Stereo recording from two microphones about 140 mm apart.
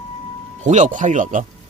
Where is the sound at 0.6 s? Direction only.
60° right (ahead or behind).